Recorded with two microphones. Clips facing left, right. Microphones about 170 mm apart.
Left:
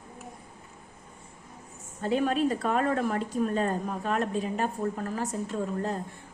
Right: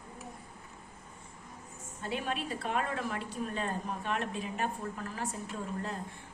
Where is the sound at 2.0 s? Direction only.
40° left (ahead or behind).